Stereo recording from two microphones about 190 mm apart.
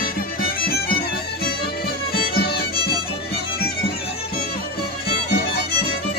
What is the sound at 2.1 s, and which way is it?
Music, 55° left (ahead or behind).